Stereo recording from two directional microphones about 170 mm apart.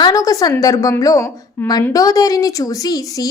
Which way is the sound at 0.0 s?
20° left (ahead or behind).